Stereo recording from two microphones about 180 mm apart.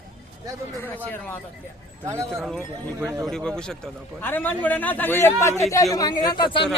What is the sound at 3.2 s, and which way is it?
A man's voice, 5° left (ahead or behind).